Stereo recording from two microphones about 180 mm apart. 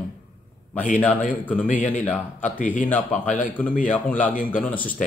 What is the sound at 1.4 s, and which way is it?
Speech, 10° left (ahead or behind).